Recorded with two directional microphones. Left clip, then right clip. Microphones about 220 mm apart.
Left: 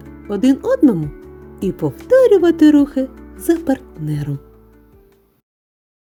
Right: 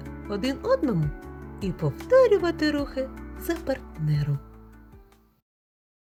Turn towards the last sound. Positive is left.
turn(degrees=35)  # may be behind; listen again after turning